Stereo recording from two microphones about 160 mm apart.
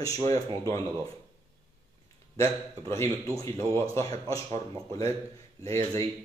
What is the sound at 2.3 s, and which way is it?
A man's voice, 15° left (ahead or behind).